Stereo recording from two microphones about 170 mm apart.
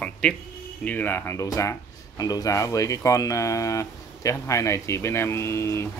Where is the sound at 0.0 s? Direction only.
5° left (ahead or behind).